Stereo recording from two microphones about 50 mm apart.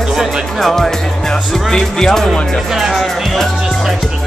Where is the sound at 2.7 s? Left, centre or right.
Centre.